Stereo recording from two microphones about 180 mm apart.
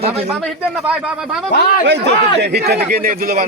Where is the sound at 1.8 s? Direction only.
75° right (ahead or behind); by 3.5 s 55° right (ahead or behind).